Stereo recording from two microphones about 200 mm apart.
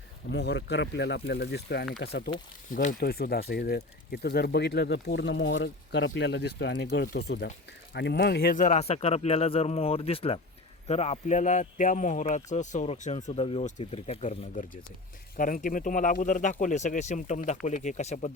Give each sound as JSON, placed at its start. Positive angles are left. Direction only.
{"t": 0.3, "sound": "speech", "side_deg": 60}
{"t": 2.7, "sound": "speech", "side_deg": 50}